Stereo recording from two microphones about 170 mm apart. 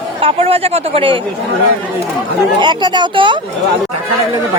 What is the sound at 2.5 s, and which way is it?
Speech, 25° right (ahead or behind).